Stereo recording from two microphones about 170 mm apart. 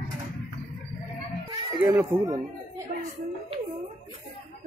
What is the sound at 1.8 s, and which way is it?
Speech, 10° right (ahead or behind).